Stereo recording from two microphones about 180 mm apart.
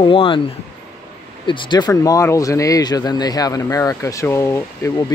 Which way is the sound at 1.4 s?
25° left (ahead or behind).